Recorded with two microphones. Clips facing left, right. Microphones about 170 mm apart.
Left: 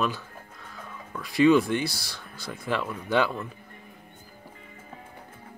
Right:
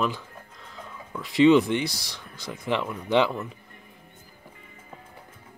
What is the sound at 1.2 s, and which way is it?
Speech, 20° right (ahead or behind).